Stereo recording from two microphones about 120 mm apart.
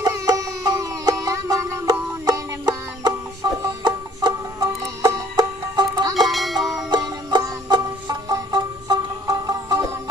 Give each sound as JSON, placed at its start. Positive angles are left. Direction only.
{"t": 0.0, "sound": "music", "side_deg": -30}
{"t": 6.2, "sound": "music", "side_deg": 0}
{"t": 7.2, "sound": "music", "side_deg": -35}